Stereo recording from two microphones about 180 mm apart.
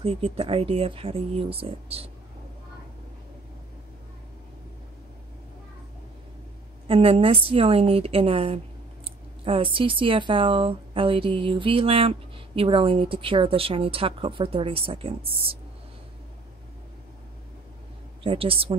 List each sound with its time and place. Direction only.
0.0 s speech: 30° right (ahead or behind)
6.9 s speech: 30° right (ahead or behind)
18.2 s speech: 30° right (ahead or behind)